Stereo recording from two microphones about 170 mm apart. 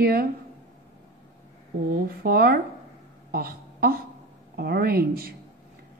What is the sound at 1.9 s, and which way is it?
Speech, 60° right (ahead or behind).